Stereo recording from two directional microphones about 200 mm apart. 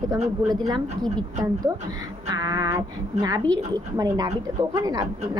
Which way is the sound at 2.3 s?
20° right (ahead or behind).